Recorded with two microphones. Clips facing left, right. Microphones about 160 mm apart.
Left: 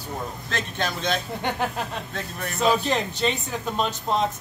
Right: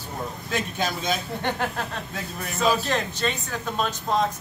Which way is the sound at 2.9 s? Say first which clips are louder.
Left 2 dB; 15° left (ahead or behind).